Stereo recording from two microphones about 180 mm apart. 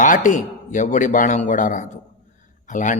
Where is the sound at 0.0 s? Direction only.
45° left (ahead or behind).